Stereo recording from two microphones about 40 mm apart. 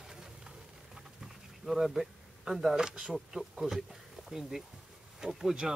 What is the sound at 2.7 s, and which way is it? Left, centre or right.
Speech, centre.